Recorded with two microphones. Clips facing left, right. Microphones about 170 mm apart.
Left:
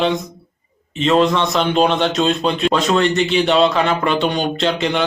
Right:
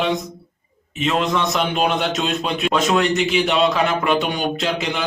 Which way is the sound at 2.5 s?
5° right (ahead or behind).